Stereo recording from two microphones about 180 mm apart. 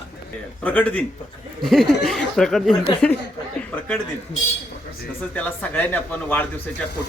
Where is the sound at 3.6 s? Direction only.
5° left (ahead or behind).